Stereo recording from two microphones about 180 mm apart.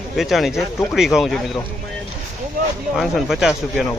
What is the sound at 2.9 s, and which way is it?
Speech, centre (ahead or behind).